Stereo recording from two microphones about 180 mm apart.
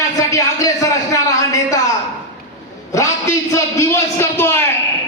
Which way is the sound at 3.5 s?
15° left (ahead or behind).